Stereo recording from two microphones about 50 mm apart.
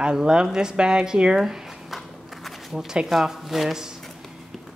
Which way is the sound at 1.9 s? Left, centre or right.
Centre.